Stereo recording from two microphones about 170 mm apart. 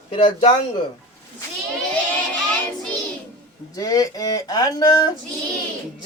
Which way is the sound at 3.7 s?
20° left (ahead or behind).